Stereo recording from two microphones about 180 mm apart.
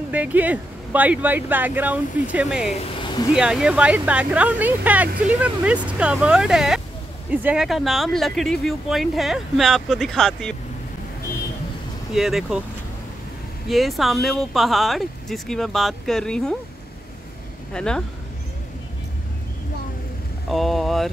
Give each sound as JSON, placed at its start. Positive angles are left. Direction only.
{"t": 0.1, "sound": "speech", "side_deg": -10}
{"t": 2.7, "sound": "a sound", "side_deg": 30}
{"t": 3.3, "sound": "speech", "side_deg": -5}
{"t": 12.1, "sound": "speech", "side_deg": 0}
{"t": 13.7, "sound": "speech", "side_deg": 0}
{"t": 17.7, "sound": "speech", "side_deg": 5}
{"t": 20.4, "sound": "speech", "side_deg": 0}